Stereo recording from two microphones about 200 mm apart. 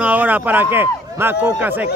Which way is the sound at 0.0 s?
10° right (ahead or behind).